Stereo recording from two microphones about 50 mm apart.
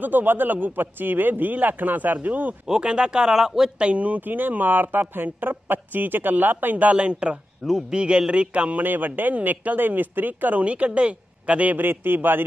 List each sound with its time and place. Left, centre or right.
0.0 s speech: right
2.6 s speech: centre
3.7 s speech: right
8.8 s speech: right
10.6 s speech: right
11.7 s a man's voice: right